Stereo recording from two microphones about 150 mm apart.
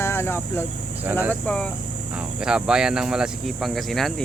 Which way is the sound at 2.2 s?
5° right (ahead or behind).